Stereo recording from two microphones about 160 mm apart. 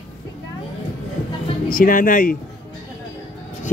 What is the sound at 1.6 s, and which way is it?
Speech, 60° left (ahead or behind).